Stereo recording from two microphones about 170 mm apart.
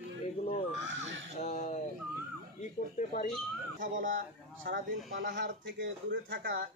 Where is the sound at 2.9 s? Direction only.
50° left (ahead or behind).